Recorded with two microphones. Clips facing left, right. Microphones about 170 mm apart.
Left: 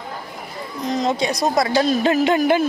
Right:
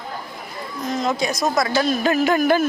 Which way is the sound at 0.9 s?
35° left (ahead or behind).